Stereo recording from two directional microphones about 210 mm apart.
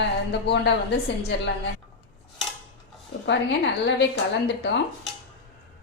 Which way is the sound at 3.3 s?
60° left (ahead or behind).